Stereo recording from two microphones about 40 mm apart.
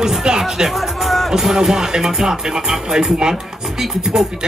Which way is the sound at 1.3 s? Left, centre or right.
Centre.